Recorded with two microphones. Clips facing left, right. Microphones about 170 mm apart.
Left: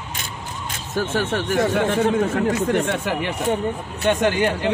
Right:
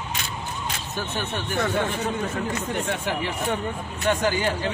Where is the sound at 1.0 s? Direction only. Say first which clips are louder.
Left 9 dB; 90° left.